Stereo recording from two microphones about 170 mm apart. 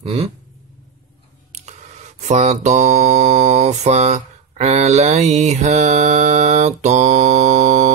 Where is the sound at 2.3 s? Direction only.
40° right (ahead or behind).